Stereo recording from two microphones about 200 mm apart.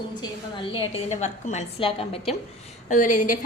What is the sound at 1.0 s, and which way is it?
A woman's voice, 35° left (ahead or behind).